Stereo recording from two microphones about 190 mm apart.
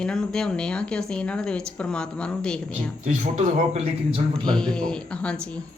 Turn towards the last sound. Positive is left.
turn(degrees=5)  # may be behind; listen again after turning